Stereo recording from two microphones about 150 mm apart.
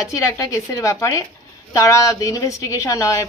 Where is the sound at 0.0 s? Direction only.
20° left (ahead or behind).